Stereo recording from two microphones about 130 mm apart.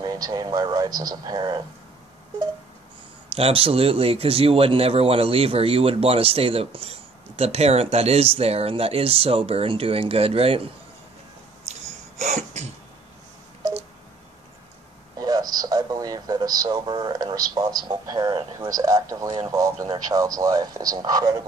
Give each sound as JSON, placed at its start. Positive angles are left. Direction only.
{"t": 0.0, "sound": "speech", "side_deg": -30}
{"t": 3.3, "sound": "speech", "side_deg": -50}
{"t": 11.6, "sound": "a sound", "side_deg": -60}
{"t": 15.1, "sound": "speech", "side_deg": -30}